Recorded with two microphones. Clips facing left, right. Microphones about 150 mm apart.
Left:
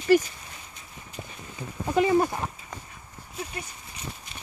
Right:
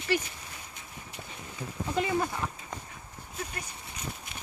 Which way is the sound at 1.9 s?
50° left (ahead or behind).